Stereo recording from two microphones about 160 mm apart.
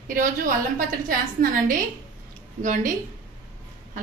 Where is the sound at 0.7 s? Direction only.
60° right (ahead or behind).